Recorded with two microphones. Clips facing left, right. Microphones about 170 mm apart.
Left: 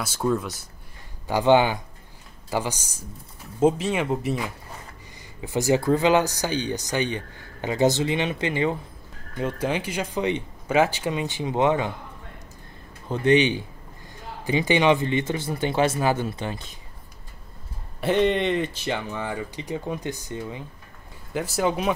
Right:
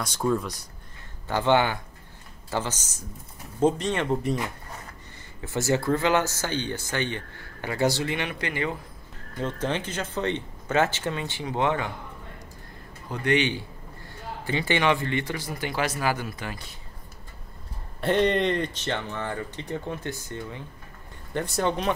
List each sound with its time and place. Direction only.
0.0 s speech: 5° left (ahead or behind)
1.2 s speech: 15° left (ahead or behind)
9.4 s speech: 10° left (ahead or behind)
13.1 s a man's voice: 20° left (ahead or behind)
18.0 s speech: centre (ahead or behind)
21.3 s speech: 5° left (ahead or behind)